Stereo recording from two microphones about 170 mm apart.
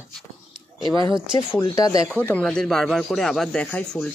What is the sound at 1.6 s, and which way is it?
Speech, 20° left (ahead or behind).